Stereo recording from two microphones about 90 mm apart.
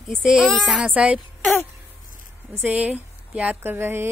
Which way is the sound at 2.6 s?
15° right (ahead or behind).